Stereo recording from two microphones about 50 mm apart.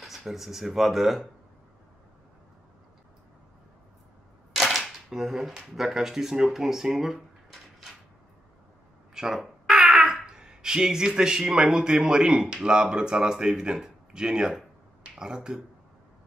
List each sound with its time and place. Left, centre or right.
0.0 s speech: centre
4.6 s speech: centre
9.1 s a sound: centre
10.2 s speech: centre